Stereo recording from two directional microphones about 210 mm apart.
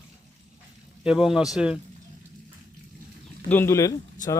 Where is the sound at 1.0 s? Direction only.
5° right (ahead or behind).